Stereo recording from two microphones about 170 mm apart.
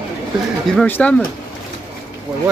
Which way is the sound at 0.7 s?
10° left (ahead or behind).